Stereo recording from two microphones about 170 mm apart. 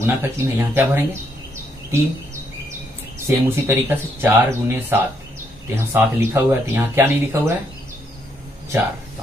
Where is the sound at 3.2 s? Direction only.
15° right (ahead or behind).